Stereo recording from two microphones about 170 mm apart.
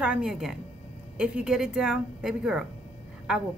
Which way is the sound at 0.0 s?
5° right (ahead or behind).